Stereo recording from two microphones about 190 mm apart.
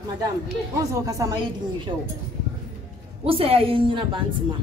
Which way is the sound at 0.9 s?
15° right (ahead or behind).